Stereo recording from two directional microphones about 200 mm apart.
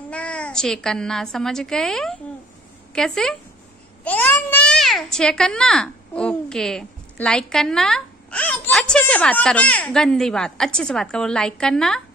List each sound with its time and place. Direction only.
0.1 s a child's voice: 5° left (ahead or behind)